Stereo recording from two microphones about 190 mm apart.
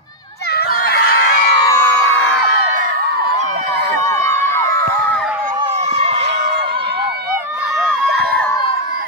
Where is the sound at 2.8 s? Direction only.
55° right (ahead or behind).